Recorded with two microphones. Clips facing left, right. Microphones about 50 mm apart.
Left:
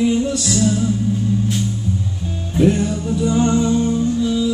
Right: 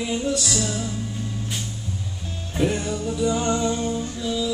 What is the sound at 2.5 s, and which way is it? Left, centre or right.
Music, centre.